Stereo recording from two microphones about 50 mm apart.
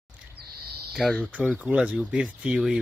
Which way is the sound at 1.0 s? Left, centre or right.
Centre.